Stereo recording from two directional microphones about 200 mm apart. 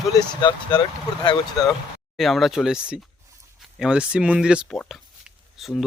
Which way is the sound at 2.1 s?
Centre (ahead or behind).